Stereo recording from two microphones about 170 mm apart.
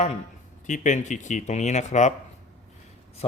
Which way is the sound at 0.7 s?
45° left (ahead or behind).